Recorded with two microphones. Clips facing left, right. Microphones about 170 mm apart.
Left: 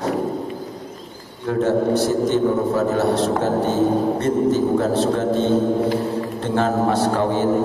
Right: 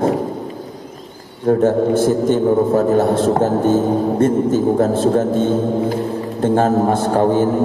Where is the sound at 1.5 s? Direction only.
50° right (ahead or behind).